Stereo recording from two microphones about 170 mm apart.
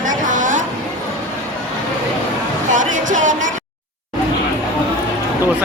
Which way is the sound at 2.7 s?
45° right (ahead or behind).